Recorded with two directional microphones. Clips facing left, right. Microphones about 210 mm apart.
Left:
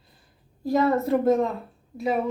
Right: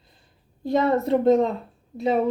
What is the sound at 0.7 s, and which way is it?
Speech, 25° right (ahead or behind).